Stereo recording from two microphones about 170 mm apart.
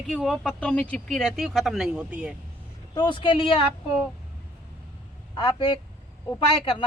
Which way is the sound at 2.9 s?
25° left (ahead or behind).